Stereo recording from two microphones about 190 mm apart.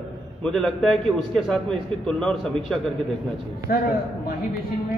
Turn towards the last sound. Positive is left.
turn(degrees=50)  # may be behind; listen again after turning